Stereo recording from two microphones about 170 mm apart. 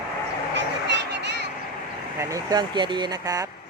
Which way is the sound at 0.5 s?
90° right.